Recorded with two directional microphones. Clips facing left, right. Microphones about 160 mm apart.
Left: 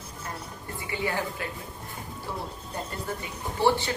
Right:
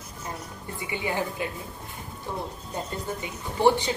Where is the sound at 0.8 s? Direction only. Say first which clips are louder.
Even; 20° right (ahead or behind).